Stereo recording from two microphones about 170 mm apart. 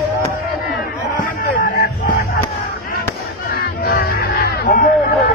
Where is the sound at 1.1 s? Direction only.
50° left (ahead or behind).